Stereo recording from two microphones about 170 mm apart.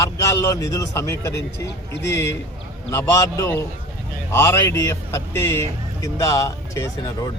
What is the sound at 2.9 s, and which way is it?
Speech, 20° left (ahead or behind).